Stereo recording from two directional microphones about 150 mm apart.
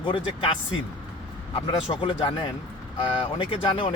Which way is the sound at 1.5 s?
35° left (ahead or behind).